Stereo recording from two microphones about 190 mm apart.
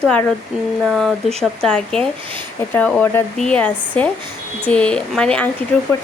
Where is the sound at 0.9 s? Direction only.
Centre (ahead or behind).